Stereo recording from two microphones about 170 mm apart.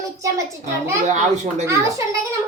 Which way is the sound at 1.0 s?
45° right (ahead or behind).